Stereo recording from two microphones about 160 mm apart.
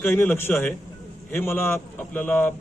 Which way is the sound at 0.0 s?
10° left (ahead or behind).